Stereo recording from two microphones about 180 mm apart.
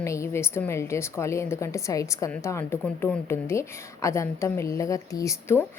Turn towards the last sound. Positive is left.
turn(degrees=15)  # may be behind; listen again after turning